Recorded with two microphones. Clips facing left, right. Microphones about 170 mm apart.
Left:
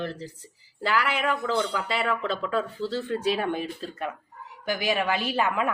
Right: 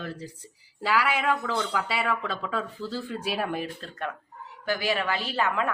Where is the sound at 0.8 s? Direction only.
10° right (ahead or behind).